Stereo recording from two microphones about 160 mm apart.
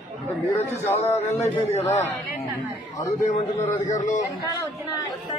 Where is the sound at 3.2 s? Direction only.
50° left (ahead or behind).